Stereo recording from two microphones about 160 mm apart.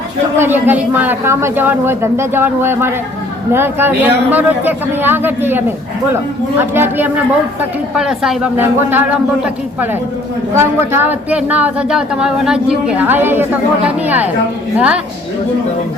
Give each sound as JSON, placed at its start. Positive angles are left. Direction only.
{"t": 0.3, "sound": "a man's voice", "side_deg": -15}